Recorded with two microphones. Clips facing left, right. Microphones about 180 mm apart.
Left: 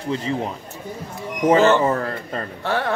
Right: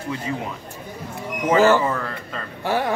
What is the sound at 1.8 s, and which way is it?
Speech, 40° left (ahead or behind).